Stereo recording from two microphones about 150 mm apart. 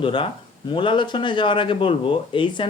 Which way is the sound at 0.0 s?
35° left (ahead or behind).